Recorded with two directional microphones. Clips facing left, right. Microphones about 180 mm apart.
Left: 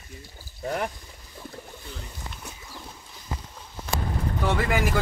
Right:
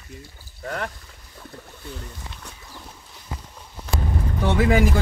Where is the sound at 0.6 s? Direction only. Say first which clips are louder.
Left 1 dB; 20° left (ahead or behind).